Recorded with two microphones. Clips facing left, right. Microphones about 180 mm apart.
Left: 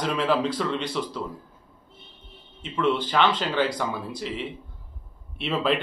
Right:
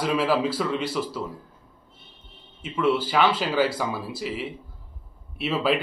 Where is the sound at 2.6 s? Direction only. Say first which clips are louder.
Right 1 dB; 5° right (ahead or behind).